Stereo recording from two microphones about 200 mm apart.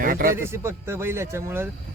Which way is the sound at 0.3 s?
10° right (ahead or behind).